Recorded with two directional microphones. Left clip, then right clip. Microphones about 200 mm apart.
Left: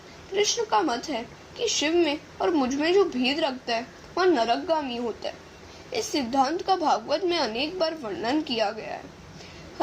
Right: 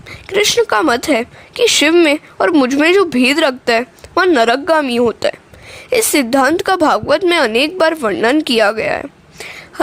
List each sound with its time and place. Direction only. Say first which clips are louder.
0.3 s speech: right 11 dB; 55° right (ahead or behind)